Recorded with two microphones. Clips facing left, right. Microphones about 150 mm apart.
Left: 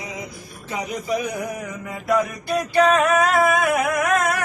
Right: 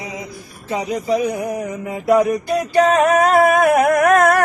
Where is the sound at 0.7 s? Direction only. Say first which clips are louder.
Right 6 dB; 25° right (ahead or behind).